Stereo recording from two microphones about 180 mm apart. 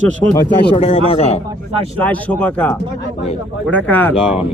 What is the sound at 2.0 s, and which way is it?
Speech, 10° left (ahead or behind).